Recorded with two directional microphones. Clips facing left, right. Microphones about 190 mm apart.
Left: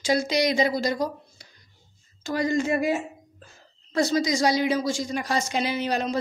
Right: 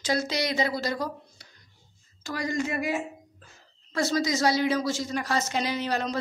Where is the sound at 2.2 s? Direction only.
25° left (ahead or behind).